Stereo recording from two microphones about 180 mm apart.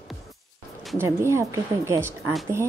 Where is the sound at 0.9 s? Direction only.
15° right (ahead or behind).